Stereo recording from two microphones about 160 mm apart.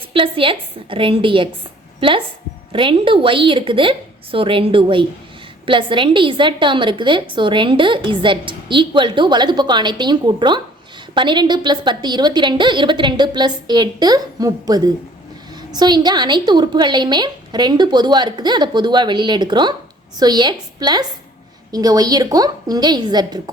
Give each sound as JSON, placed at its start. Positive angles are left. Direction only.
{"t": 0.1, "sound": "a woman's voice", "side_deg": -35}